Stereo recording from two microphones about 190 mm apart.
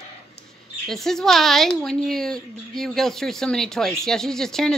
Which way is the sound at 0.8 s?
Centre (ahead or behind).